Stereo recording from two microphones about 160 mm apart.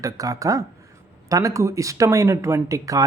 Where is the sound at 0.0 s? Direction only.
20° right (ahead or behind).